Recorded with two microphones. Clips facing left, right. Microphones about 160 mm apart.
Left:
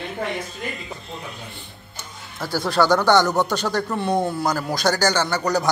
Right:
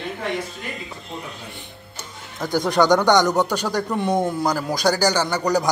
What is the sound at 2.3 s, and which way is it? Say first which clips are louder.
A man's voice: right 2 dB; 20° right (ahead or behind).